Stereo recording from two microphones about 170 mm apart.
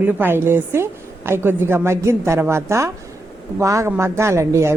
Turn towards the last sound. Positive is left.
turn(degrees=-15)  # may be behind; listen again after turning